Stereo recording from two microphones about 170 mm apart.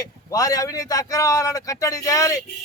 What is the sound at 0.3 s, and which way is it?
Speech, 20° left (ahead or behind).